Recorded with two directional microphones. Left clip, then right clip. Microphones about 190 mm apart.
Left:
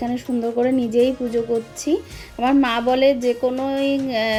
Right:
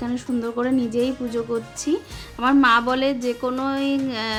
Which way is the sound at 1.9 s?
5° right (ahead or behind).